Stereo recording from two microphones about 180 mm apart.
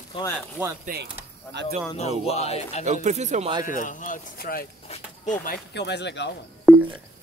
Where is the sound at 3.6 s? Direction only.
45° left (ahead or behind); by 6.3 s 75° left (ahead or behind).